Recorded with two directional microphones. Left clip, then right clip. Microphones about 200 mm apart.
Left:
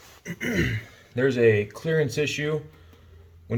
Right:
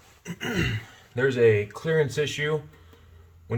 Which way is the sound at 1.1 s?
15° right (ahead or behind).